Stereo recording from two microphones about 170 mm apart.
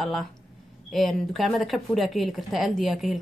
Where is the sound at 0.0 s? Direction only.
Centre (ahead or behind).